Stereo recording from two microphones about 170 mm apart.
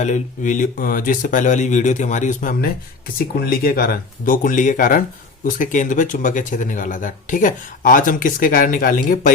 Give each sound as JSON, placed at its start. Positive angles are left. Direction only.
{"t": 0.0, "sound": "speech", "side_deg": 45}